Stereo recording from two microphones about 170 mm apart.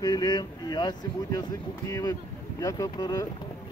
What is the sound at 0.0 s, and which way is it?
Speech, 25° left (ahead or behind).